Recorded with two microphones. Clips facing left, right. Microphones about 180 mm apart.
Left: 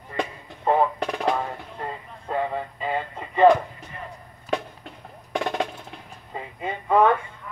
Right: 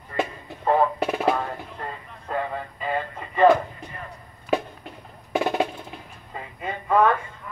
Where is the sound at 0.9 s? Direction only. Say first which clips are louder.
Right 2 dB; 5° right (ahead or behind).